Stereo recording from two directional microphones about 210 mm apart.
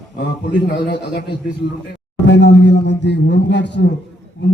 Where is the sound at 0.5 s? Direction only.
50° left (ahead or behind).